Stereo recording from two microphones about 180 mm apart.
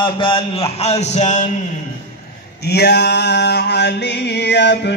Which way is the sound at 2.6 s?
65° left (ahead or behind).